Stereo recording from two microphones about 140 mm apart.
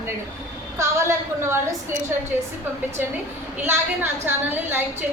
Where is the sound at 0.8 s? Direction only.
20° right (ahead or behind).